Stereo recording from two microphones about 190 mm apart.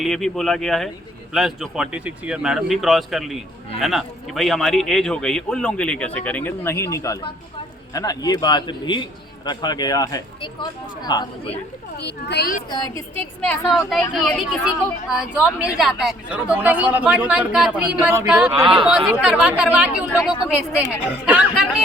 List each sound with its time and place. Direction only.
0.0 s a man's voice: centre (ahead or behind); by 11.5 s 20° left (ahead or behind)
11.9 s a child's voice: 60° left (ahead or behind)
12.7 s speech: 15° left (ahead or behind)
13.4 s a man's voice: 5° left (ahead or behind)
18.6 s speech: 25° right (ahead or behind)
18.9 s a man's voice: 5° right (ahead or behind)
21.2 s speech: 5° right (ahead or behind)